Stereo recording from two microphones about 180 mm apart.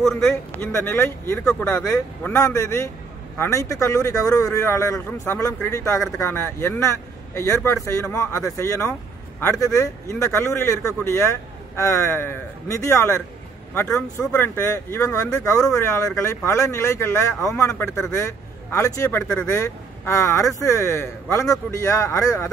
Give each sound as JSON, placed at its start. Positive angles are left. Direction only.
{"t": 0.0, "sound": "speech", "side_deg": 0}
{"t": 0.7, "sound": "a man's voice", "side_deg": 15}